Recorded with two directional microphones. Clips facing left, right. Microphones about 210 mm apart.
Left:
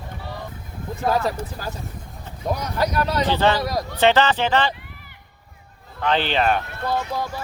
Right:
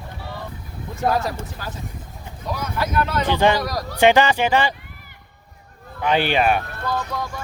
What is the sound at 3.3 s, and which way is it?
Speech, 15° right (ahead or behind).